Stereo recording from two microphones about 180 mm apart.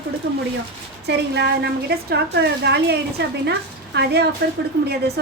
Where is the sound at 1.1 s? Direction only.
70° right (ahead or behind).